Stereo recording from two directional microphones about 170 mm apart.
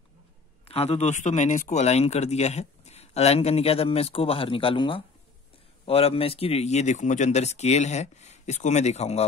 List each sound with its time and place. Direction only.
0.7 s a man's voice: 35° left (ahead or behind)